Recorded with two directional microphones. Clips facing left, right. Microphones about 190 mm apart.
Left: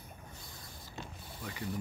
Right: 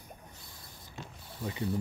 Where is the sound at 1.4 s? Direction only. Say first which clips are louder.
Right 7 dB; 25° right (ahead or behind).